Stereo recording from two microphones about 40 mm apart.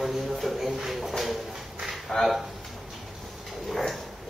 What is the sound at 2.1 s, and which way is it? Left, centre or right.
Speech, centre.